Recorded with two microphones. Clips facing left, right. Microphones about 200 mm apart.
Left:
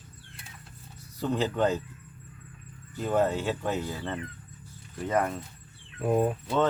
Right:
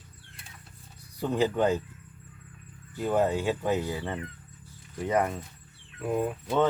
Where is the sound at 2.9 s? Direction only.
10° right (ahead or behind).